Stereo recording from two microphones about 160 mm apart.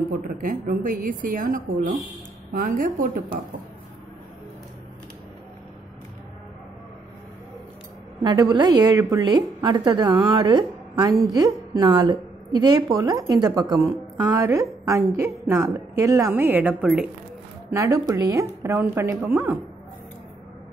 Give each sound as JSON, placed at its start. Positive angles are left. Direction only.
{"t": 0.1, "sound": "a woman's voice", "side_deg": -60}
{"t": 8.2, "sound": "a woman's voice", "side_deg": -25}
{"t": 17.6, "sound": "a woman's voice", "side_deg": -15}